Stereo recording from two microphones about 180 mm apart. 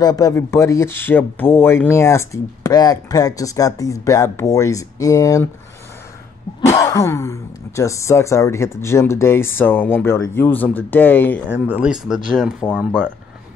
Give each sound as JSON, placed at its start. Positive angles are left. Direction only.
{"t": 0.0, "sound": "speech", "side_deg": 20}
{"t": 6.6, "sound": "speech", "side_deg": 15}
{"t": 11.7, "sound": "speech", "side_deg": -5}